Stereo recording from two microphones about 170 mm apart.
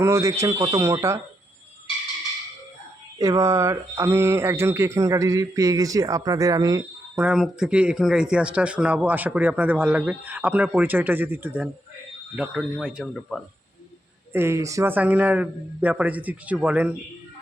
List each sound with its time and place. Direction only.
0.0 s speech: 15° right (ahead or behind)
3.2 s speech: 20° right (ahead or behind)
7.2 s speech: 5° right (ahead or behind)
12.8 s speech: centre (ahead or behind)
14.3 s speech: 15° right (ahead or behind)